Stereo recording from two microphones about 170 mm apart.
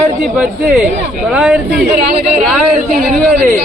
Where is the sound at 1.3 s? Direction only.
5° right (ahead or behind).